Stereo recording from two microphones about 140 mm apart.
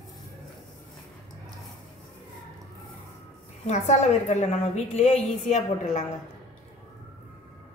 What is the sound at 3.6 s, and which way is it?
A woman's voice, 55° left (ahead or behind).